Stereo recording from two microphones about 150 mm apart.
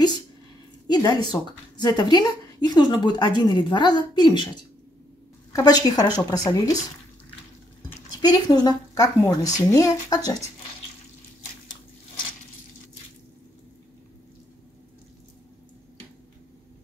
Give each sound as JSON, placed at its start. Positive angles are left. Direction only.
{"t": 0.8, "sound": "a woman's voice", "side_deg": 25}
{"t": 5.5, "sound": "a woman's voice", "side_deg": 25}
{"t": 8.2, "sound": "a woman's voice", "side_deg": 25}